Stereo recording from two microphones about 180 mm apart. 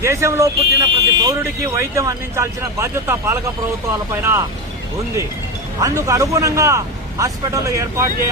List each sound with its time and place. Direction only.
0.0 s a man's voice: 15° right (ahead or behind)
5.8 s a man's voice: 20° right (ahead or behind)